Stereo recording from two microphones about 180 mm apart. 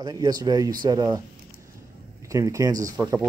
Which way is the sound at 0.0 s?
20° right (ahead or behind).